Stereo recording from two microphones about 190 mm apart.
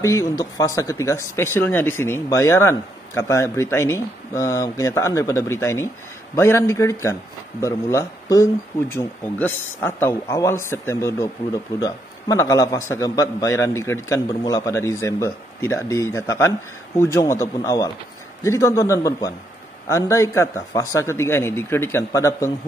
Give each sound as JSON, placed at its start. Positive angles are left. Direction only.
{"t": 0.0, "sound": "a man's voice", "side_deg": 15}